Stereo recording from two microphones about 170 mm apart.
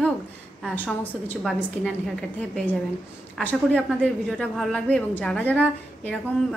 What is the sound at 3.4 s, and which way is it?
A woman's voice, 10° left (ahead or behind).